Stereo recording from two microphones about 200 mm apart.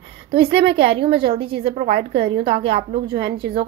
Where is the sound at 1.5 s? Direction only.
50° right (ahead or behind).